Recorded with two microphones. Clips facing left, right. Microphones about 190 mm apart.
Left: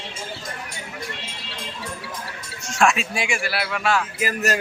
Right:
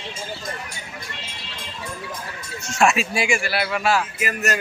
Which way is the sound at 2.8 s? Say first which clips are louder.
Right 1 dB; 5° right (ahead or behind).